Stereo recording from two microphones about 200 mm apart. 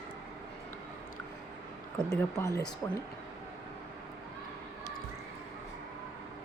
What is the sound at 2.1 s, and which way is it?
Speech, 15° left (ahead or behind).